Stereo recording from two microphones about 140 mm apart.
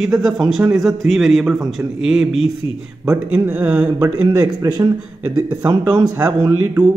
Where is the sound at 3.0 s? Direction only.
15° right (ahead or behind).